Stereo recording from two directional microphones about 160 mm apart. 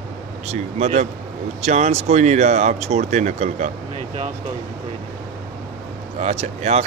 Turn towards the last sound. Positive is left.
turn(degrees=-40)  # may be behind; listen again after turning